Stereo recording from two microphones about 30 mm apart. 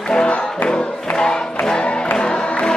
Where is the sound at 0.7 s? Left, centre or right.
Left.